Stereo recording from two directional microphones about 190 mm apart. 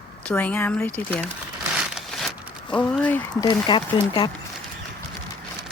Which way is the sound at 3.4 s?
25° left (ahead or behind).